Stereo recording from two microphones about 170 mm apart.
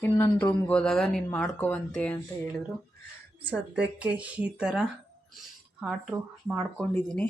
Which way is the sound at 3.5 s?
5° right (ahead or behind).